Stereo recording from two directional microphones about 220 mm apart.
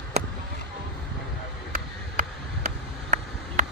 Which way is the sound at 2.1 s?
40° right (ahead or behind).